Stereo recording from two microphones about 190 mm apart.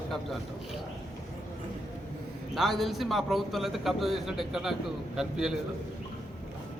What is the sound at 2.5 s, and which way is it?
A man's voice, centre (ahead or behind).